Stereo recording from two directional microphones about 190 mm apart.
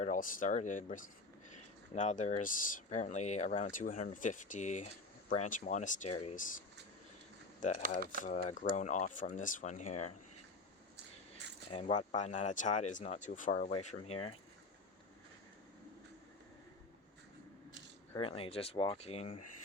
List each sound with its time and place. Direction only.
0.0 s speech: 45° left (ahead or behind)
8.2 s speech: 40° left (ahead or behind)
11.7 s speech: 30° left (ahead or behind)
18.2 s speech: 30° left (ahead or behind)